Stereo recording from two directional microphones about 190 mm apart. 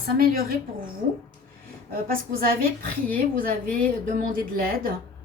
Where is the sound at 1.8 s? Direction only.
50° right (ahead or behind).